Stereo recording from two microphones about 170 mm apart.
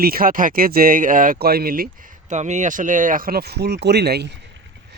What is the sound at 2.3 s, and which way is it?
Speech, 45° right (ahead or behind).